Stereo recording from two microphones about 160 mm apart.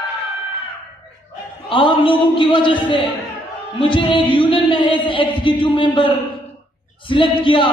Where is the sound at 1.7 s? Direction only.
35° left (ahead or behind).